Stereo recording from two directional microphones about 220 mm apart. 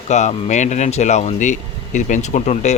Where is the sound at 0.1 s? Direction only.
30° left (ahead or behind).